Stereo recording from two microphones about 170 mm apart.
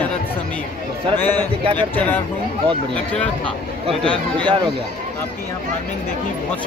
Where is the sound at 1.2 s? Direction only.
10° left (ahead or behind).